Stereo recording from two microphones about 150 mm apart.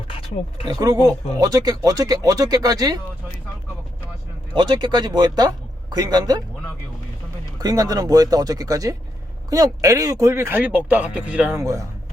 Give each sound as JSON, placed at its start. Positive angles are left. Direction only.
{"t": 0.1, "sound": "a sound", "side_deg": 40}
{"t": 0.7, "sound": "speech", "side_deg": -25}
{"t": 4.5, "sound": "speech", "side_deg": -30}
{"t": 7.6, "sound": "speech", "side_deg": -25}
{"t": 11.6, "sound": "speech", "side_deg": -20}